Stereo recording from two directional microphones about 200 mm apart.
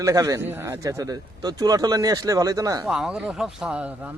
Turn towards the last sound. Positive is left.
turn(degrees=-5)  # may be behind; listen again after turning